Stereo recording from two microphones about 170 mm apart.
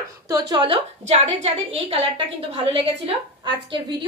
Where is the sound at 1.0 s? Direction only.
40° right (ahead or behind).